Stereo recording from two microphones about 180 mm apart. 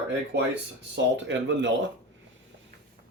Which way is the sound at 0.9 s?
85° right.